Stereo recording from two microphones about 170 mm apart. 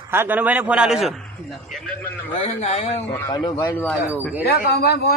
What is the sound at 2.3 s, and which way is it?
Speech, 35° left (ahead or behind).